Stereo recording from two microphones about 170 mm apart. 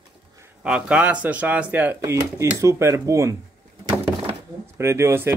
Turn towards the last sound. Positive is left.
turn(degrees=-15)  # may be behind; listen again after turning